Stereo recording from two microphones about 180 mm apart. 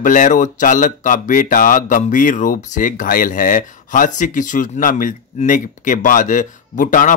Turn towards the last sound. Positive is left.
turn(degrees=45)  # may be behind; listen again after turning